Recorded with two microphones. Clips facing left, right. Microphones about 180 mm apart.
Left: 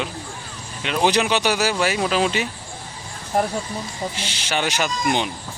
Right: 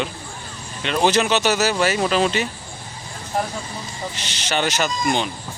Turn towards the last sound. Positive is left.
turn(degrees=10)  # may be behind; listen again after turning